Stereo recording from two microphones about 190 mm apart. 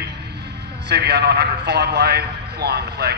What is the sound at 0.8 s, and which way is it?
A man's voice, 60° right (ahead or behind).